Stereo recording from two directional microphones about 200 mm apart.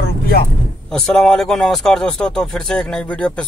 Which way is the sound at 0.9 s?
5° left (ahead or behind).